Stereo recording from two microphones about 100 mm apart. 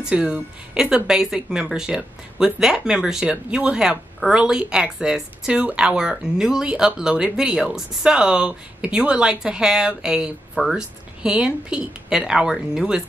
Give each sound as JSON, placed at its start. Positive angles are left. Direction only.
{"t": 0.0, "sound": "speech", "side_deg": -10}